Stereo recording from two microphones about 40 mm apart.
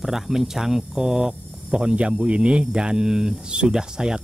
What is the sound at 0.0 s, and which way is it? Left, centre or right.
Speech, centre.